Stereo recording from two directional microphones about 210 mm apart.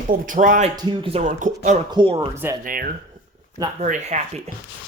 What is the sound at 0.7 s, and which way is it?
Speech, 20° right (ahead or behind).